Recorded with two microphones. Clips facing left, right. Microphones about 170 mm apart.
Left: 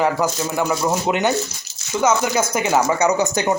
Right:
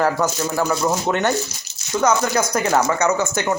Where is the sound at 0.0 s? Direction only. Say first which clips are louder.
Even; centre (ahead or behind).